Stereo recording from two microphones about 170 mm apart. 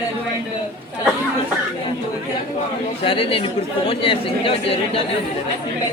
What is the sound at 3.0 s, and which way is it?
Speech, 30° left (ahead or behind).